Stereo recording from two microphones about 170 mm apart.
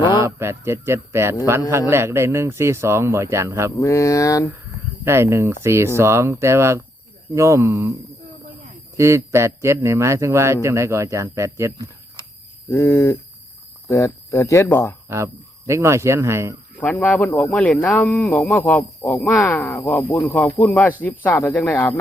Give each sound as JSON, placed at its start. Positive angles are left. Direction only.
{"t": 0.2, "sound": "a man's voice", "side_deg": -15}
{"t": 3.8, "sound": "speech", "side_deg": 20}
{"t": 5.0, "sound": "a man's voice", "side_deg": -15}
{"t": 9.0, "sound": "a man's voice", "side_deg": -15}
{"t": 12.7, "sound": "speech", "side_deg": 15}
{"t": 15.1, "sound": "a man's voice", "side_deg": -15}
{"t": 16.8, "sound": "speech", "side_deg": 10}